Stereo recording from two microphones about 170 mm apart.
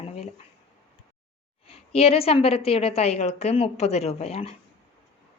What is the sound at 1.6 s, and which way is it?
A woman's voice, 35° left (ahead or behind).